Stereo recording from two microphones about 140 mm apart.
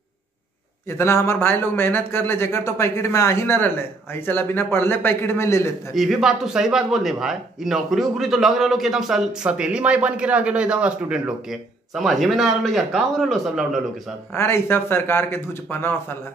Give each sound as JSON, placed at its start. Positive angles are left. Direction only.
{"t": 0.8, "sound": "a man's voice", "side_deg": 20}
{"t": 5.9, "sound": "a man's voice", "side_deg": 0}
{"t": 14.3, "sound": "a man's voice", "side_deg": 20}